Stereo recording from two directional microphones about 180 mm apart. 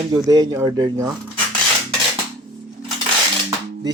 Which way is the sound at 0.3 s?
20° right (ahead or behind).